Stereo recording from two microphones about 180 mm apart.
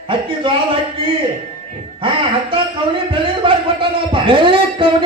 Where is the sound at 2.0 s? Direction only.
30° right (ahead or behind).